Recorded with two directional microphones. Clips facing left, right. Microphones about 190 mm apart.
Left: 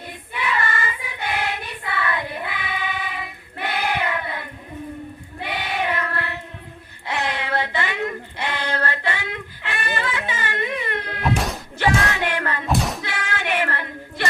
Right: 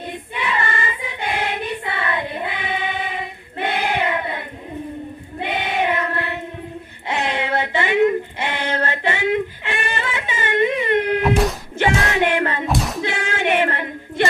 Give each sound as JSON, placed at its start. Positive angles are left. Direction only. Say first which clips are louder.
{"t": 0.1, "sound": "choir", "louder": "even", "side_deg": -25}
{"t": 5.4, "sound": "child singing", "louder": "right 4 dB", "side_deg": -25}
{"t": 7.1, "sound": "a sound", "louder": "right 3 dB", "side_deg": -25}
{"t": 11.8, "sound": "child singing", "louder": "right 3 dB", "side_deg": -20}
{"t": 12.6, "sound": "a sound", "louder": "right 1 dB", "side_deg": 0}
{"t": 13.0, "sound": "female singing", "louder": "right 6 dB", "side_deg": -25}